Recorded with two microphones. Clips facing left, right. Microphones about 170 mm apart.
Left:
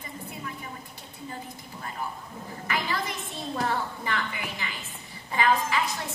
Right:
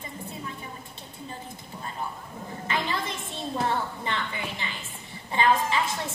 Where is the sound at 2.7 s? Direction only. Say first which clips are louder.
Even; 25° right (ahead or behind).